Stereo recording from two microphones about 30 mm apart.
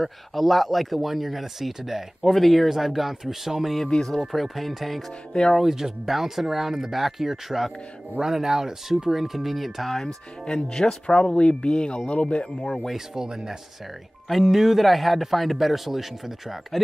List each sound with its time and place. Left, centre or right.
0.0 s speech: centre
2.3 s speech: centre
3.9 s speech: left
4.3 s speech: centre
5.3 s speech: centre
5.8 s speech: centre
10.0 s speech: left
12.9 s speech: centre
14.4 s speech: centre